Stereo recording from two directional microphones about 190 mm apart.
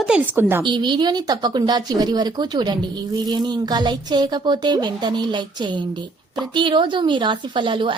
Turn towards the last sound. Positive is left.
turn(degrees=-25)  # may be behind; listen again after turning